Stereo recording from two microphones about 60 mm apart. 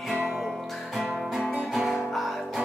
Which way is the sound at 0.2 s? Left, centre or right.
Centre.